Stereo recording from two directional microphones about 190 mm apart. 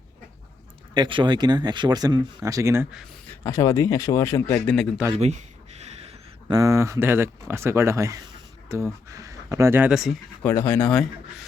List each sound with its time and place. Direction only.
0.9 s speech: 25° right (ahead or behind)
3.4 s speech: 15° left (ahead or behind)
5.1 s speech: 35° right (ahead or behind)
6.5 s speech: 15° right (ahead or behind); by 10.2 s centre (ahead or behind)
10.4 s speech: 10° left (ahead or behind)